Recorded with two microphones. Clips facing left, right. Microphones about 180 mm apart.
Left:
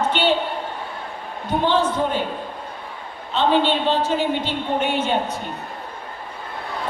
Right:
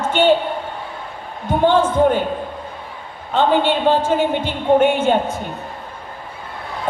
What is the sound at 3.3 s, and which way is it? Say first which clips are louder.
A woman's voice: right 3 dB; 50° right (ahead or behind).